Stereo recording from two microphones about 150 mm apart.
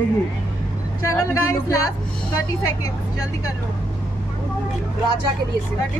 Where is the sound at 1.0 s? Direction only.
20° left (ahead or behind).